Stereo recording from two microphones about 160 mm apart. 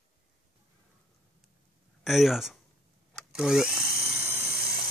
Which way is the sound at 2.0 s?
Centre (ahead or behind).